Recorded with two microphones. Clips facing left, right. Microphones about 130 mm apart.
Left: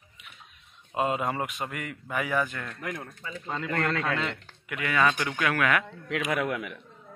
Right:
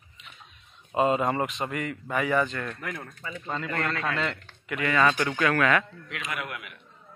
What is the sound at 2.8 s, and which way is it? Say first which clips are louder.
Speech: left 1 dB; 15° left (ahead or behind).